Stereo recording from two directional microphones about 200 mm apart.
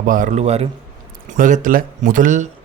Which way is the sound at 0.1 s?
40° right (ahead or behind).